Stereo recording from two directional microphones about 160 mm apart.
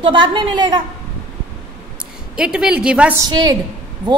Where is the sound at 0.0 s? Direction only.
30° right (ahead or behind).